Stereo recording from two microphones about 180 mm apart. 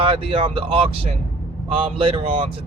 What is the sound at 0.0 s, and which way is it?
Speech, 30° right (ahead or behind).